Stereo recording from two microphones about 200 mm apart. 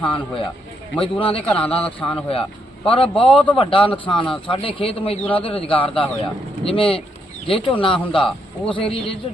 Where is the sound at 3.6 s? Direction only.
25° left (ahead or behind).